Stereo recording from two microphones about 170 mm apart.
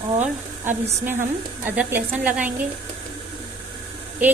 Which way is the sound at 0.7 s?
10° right (ahead or behind).